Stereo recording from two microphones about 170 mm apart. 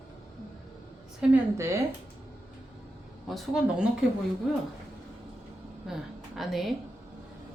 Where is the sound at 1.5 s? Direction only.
15° right (ahead or behind).